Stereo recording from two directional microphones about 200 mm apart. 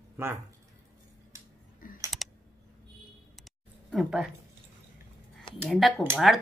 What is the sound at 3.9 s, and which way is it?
Speech, centre (ahead or behind).